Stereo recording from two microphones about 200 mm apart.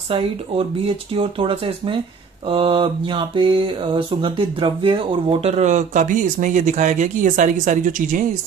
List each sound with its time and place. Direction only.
0.1 s speech: 30° right (ahead or behind)
2.4 s mantra: 25° right (ahead or behind)